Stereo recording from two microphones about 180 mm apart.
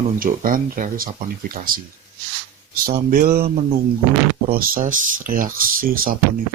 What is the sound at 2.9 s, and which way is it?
Speech, 50° right (ahead or behind).